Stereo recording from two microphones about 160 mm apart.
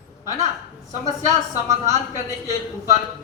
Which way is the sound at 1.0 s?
20° right (ahead or behind).